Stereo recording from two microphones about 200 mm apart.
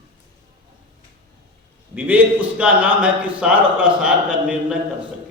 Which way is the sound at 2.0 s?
10° right (ahead or behind).